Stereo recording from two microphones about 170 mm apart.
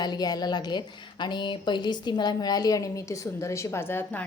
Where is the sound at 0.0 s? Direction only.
25° left (ahead or behind).